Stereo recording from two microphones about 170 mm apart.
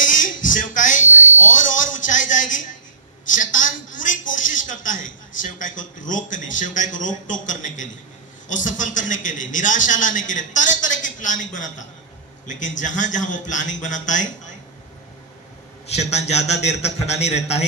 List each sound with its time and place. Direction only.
0.0 s a sound: 50° left (ahead or behind)
3.2 s a man's voice: 50° left (ahead or behind)
15.9 s a man's voice: 40° left (ahead or behind)